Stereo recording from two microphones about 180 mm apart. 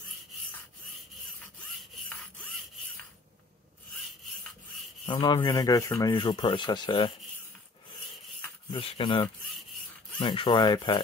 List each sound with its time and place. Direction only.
5.0 s speech: 25° left (ahead or behind)
8.7 s speech: 25° left (ahead or behind)